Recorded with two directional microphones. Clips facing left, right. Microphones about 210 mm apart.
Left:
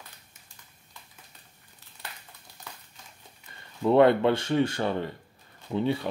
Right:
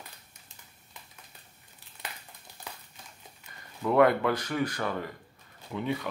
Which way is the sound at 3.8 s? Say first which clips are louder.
Left 3 dB; 25° left (ahead or behind).